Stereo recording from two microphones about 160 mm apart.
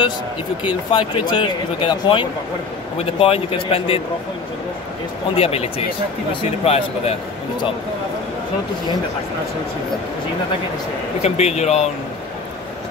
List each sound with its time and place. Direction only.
0.9 s speech: 30° left (ahead or behind)
5.3 s speech: 40° left (ahead or behind)
11.2 s speech: 45° left (ahead or behind)